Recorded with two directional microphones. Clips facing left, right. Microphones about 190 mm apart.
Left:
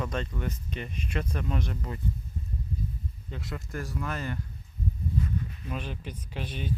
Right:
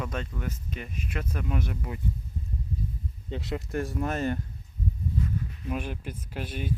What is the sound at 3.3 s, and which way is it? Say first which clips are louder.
Speech: right 6 dB; 25° right (ahead or behind).